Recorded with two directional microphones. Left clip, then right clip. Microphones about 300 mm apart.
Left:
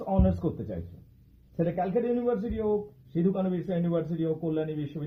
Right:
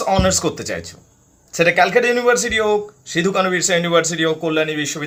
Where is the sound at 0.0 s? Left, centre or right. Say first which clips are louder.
Right 13 dB; right.